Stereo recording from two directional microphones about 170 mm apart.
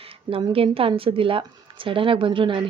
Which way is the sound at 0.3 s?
30° right (ahead or behind).